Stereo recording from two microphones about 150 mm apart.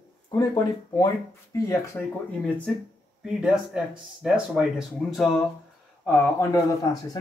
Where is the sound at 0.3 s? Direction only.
25° left (ahead or behind).